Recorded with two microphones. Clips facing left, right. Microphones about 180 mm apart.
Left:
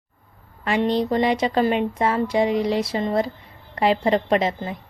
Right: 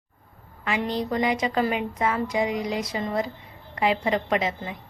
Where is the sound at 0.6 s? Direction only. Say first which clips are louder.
Left 6 dB; 30° left (ahead or behind).